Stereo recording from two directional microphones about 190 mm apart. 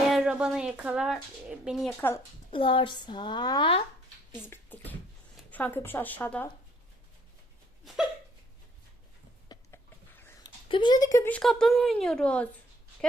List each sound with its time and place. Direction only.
0.1 s speech: 5° right (ahead or behind)
2.5 s speech: 25° left (ahead or behind)
4.4 s speech: 10° left (ahead or behind)
9.5 s a sound: 15° left (ahead or behind)
10.7 s speech: 25° left (ahead or behind); by 12.5 s 5° left (ahead or behind)